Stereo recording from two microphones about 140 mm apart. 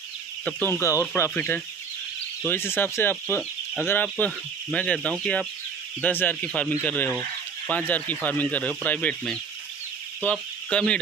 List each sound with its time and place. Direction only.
0.5 s speech: 15° left (ahead or behind)